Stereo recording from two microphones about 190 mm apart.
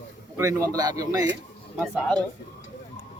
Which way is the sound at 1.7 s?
Centre (ahead or behind).